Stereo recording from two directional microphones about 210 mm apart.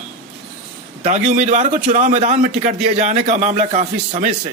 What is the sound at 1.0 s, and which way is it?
Speech, 35° right (ahead or behind).